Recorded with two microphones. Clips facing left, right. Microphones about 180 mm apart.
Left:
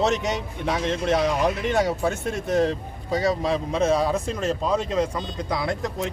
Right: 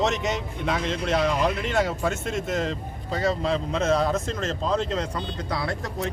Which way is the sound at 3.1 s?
10° left (ahead or behind).